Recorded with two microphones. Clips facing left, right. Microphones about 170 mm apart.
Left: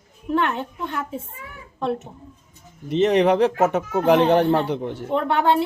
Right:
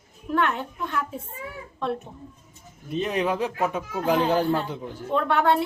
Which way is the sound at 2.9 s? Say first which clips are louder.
Left 8 dB; 75° left (ahead or behind).